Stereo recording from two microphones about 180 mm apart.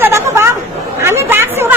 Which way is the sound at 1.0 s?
15° right (ahead or behind).